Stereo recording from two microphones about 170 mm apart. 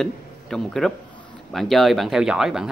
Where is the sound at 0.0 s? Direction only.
Centre (ahead or behind).